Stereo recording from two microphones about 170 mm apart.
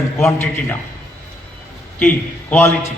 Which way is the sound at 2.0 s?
10° left (ahead or behind).